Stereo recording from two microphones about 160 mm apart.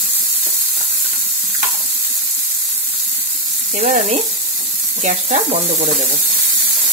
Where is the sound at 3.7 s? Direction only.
55° right (ahead or behind).